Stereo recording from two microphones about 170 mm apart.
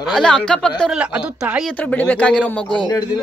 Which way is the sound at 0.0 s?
5° left (ahead or behind).